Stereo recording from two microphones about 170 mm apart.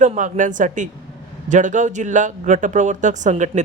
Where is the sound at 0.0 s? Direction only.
50° right (ahead or behind).